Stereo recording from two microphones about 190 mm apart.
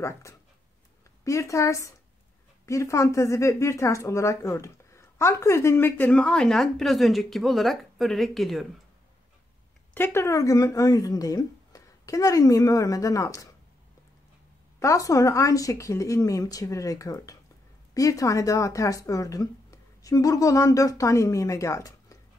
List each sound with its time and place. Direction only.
0.0 s a woman's voice: 15° left (ahead or behind)
9.9 s a woman's voice: 10° left (ahead or behind)
14.8 s a woman's voice: 15° left (ahead or behind)